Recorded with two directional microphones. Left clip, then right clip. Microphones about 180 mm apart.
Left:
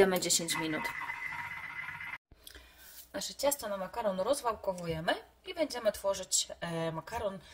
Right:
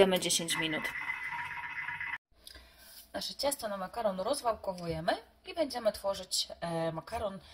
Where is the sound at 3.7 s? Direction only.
35° left (ahead or behind).